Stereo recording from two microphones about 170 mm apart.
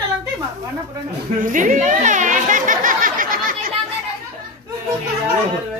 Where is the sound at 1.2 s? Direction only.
50° right (ahead or behind).